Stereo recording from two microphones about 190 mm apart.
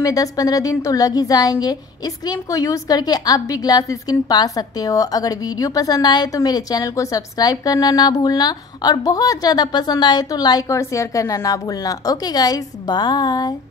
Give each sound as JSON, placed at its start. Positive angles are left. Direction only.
{"t": 0.0, "sound": "a woman's voice", "side_deg": 20}